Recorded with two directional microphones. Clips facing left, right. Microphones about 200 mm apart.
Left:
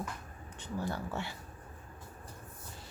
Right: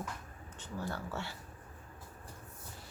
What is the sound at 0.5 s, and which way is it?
Speech, 15° left (ahead or behind).